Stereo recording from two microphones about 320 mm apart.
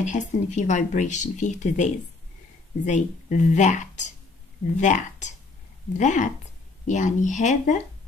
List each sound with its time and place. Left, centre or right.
0.0 s speech: left